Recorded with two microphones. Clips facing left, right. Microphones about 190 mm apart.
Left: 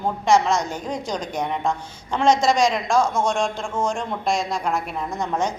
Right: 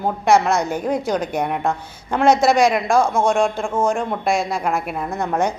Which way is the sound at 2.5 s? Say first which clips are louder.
Right 4 dB; 60° right (ahead or behind).